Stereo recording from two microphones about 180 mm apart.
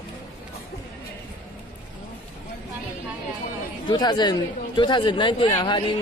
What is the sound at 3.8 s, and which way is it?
Speech, 25° left (ahead or behind).